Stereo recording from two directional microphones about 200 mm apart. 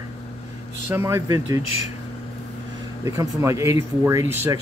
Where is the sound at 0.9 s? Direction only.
15° right (ahead or behind).